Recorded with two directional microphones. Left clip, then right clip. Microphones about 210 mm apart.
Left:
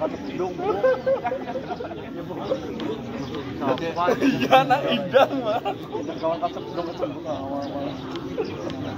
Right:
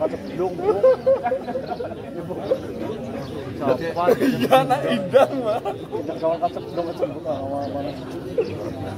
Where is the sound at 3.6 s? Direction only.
50° right (ahead or behind).